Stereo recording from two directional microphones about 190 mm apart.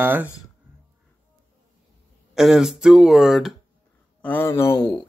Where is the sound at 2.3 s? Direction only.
Centre (ahead or behind).